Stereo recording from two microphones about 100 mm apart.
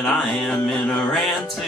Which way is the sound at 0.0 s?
5° left (ahead or behind).